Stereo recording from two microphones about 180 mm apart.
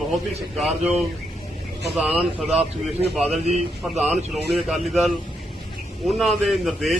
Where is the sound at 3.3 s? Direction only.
35° right (ahead or behind).